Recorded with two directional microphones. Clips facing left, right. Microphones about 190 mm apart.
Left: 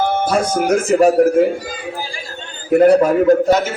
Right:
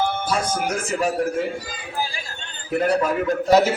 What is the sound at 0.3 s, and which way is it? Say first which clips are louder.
Speech: left 8 dB; 45° left (ahead or behind).